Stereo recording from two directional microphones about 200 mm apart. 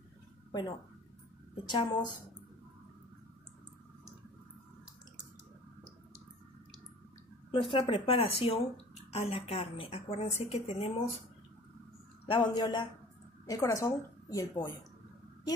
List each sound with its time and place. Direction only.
0.5 s a woman's voice: 20° left (ahead or behind)
7.5 s speech: 25° left (ahead or behind)
12.3 s a woman's voice: 25° left (ahead or behind)